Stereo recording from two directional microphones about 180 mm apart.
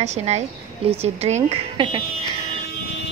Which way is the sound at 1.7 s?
25° right (ahead or behind).